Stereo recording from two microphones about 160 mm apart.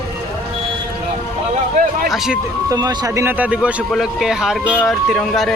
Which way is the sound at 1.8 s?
50° right (ahead or behind).